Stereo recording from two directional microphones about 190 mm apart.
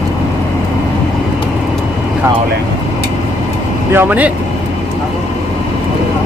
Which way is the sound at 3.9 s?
10° right (ahead or behind).